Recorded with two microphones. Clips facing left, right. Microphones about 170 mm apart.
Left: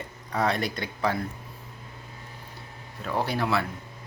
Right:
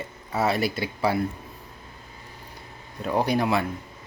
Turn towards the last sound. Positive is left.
turn(degrees=-15)  # may be behind; listen again after turning